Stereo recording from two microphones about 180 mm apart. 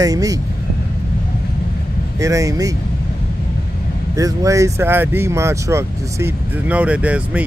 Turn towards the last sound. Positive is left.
turn(degrees=-5)  # may be behind; listen again after turning